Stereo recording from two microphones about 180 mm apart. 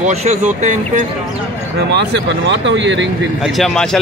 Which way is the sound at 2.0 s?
80° right.